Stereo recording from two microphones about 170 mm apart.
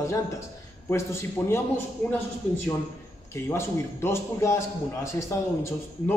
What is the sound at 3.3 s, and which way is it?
A man's voice, 15° left (ahead or behind).